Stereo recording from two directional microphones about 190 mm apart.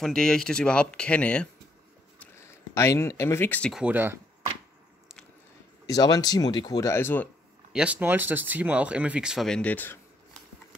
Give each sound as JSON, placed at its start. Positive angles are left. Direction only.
{"t": 0.0, "sound": "speech", "side_deg": 0}
{"t": 2.7, "sound": "speech", "side_deg": 15}
{"t": 3.7, "sound": "speech", "side_deg": -10}
{"t": 5.9, "sound": "speech", "side_deg": 20}
{"t": 7.7, "sound": "speech", "side_deg": -5}